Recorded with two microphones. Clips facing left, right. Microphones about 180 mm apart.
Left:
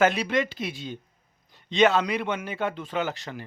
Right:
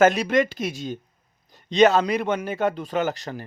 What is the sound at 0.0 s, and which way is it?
A man's voice, 45° right (ahead or behind).